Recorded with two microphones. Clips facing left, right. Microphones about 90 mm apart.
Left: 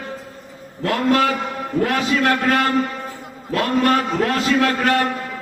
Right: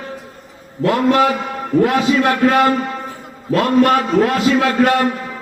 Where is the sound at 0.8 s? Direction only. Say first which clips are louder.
Right 4 dB; 20° right (ahead or behind).